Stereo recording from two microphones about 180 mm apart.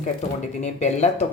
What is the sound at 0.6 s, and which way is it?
Speech, 40° left (ahead or behind).